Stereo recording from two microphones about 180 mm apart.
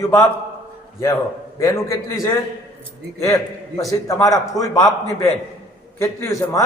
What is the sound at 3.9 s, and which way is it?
Speech, 20° left (ahead or behind).